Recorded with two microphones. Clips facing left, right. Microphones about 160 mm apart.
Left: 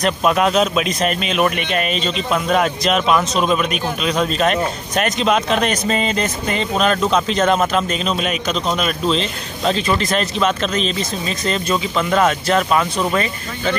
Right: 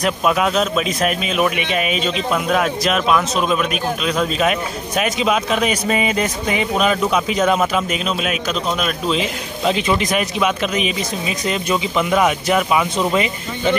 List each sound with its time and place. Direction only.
0.0 s a man's voice: centre (ahead or behind); by 13.7 s 15° right (ahead or behind)